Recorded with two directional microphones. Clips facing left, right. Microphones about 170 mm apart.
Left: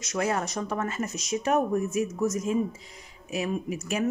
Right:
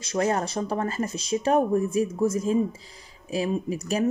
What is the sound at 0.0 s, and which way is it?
Speech, 30° right (ahead or behind).